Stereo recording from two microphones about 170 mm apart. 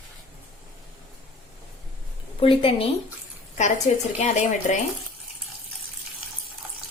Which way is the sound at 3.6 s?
45° left (ahead or behind).